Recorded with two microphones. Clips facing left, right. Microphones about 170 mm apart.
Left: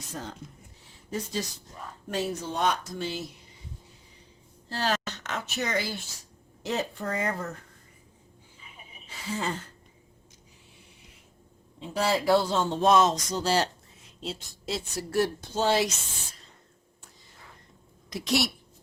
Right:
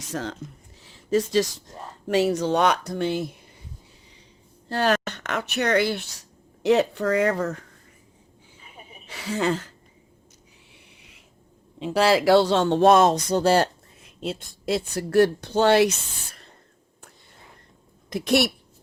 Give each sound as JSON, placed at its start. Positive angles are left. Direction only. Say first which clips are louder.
{"t": 0.1, "sound": "speech", "louder": "right 8 dB", "side_deg": -85}
{"t": 0.8, "sound": "a sound", "louder": "right 12 dB", "side_deg": -90}
{"t": 2.0, "sound": "speech", "louder": "right 10 dB", "side_deg": -90}
{"t": 4.7, "sound": "speech", "louder": "right 7 dB", "side_deg": -55}
{"t": 9.0, "sound": "gasp", "louder": "right 8 dB", "side_deg": -80}
{"t": 11.8, "sound": "speech", "louder": "right 7 dB", "side_deg": -90}
{"t": 18.1, "sound": "speech", "louder": "right 6 dB", "side_deg": -60}